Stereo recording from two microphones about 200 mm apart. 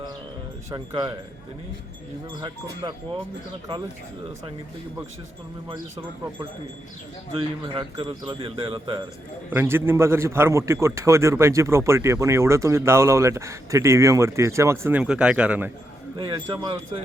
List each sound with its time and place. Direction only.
0.7 s speech: 20° right (ahead or behind)
2.4 s speech: 20° right (ahead or behind)
7.3 s speech: 25° right (ahead or behind)
9.5 s a man's voice: 10° right (ahead or behind)
16.1 s speech: 25° right (ahead or behind)